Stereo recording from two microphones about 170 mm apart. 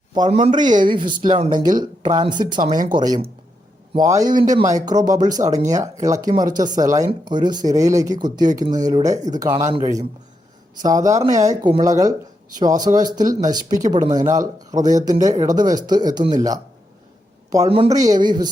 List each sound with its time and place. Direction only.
0.1 s speech: 30° right (ahead or behind)
17.7 s speech: 30° right (ahead or behind)
17.9 s speech: 20° right (ahead or behind)